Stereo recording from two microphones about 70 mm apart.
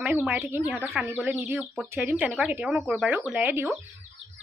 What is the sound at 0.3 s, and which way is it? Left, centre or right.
Speech, right.